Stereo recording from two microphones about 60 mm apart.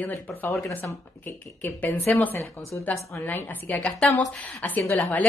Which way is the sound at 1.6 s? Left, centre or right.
Left.